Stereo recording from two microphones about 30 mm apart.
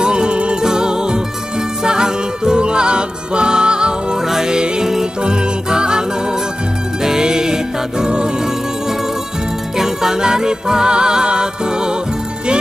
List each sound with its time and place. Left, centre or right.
0.0 s music: right
0.6 s music: right
7.1 s music: right
9.8 s music: centre